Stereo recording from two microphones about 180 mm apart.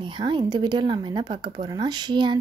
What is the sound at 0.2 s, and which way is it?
Speech, 25° right (ahead or behind).